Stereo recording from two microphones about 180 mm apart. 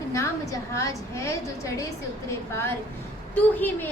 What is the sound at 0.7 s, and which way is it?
A woman's voice, 15° left (ahead or behind).